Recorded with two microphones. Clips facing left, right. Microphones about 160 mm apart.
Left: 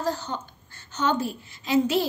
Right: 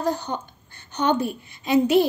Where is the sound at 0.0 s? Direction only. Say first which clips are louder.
Right 3 dB; 15° right (ahead or behind).